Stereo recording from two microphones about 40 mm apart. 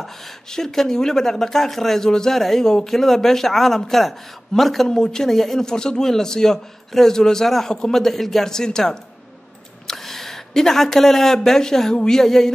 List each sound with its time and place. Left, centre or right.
0.0 s speech: centre
4.8 s a man's voice: centre
8.0 s speech: centre